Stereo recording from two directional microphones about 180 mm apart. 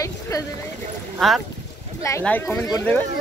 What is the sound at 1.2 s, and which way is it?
Speech, 5° left (ahead or behind).